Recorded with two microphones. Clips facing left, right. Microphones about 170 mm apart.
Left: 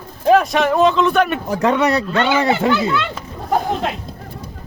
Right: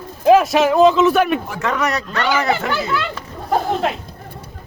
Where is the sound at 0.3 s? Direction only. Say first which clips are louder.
Right 2 dB; centre (ahead or behind).